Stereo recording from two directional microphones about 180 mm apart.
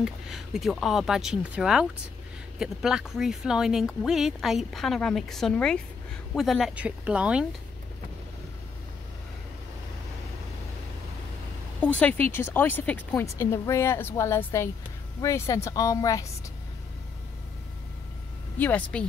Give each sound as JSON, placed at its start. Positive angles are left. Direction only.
{"t": 0.0, "sound": "speech", "side_deg": 0}
{"t": 11.8, "sound": "a woman's voice", "side_deg": 10}
{"t": 18.6, "sound": "speech", "side_deg": 10}